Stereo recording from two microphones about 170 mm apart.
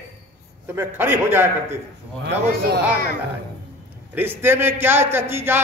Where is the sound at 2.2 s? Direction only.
75° right (ahead or behind).